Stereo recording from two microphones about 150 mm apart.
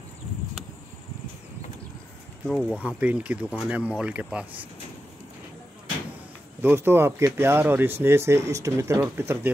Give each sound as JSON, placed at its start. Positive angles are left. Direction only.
{"t": 2.4, "sound": "speech", "side_deg": 5}
{"t": 2.8, "sound": "speech", "side_deg": -10}
{"t": 6.6, "sound": "speech", "side_deg": -15}